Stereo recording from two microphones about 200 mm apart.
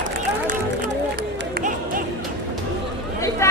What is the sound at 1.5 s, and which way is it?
Music, 45° right (ahead or behind).